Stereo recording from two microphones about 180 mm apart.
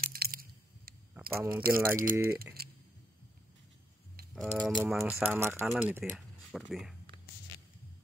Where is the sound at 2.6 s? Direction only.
60° right (ahead or behind).